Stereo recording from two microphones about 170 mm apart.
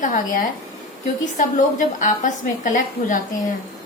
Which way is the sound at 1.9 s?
50° left (ahead or behind).